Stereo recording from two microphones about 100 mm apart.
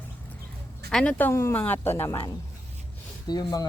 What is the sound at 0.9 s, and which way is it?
Speech, 5° left (ahead or behind).